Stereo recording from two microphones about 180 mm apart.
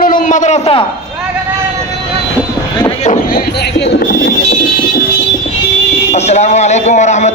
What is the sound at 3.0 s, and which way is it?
Speech, 45° left (ahead or behind).